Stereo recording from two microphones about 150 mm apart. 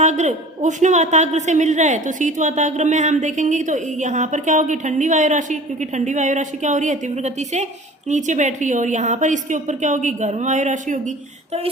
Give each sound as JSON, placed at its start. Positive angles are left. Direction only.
{"t": 0.0, "sound": "a woman's voice", "side_deg": -50}